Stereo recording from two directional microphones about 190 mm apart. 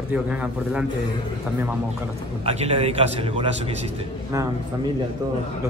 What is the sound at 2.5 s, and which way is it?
A man's voice, 35° right (ahead or behind).